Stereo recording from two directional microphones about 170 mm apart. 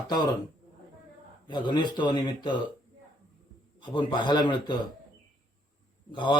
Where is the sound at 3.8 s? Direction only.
30° left (ahead or behind).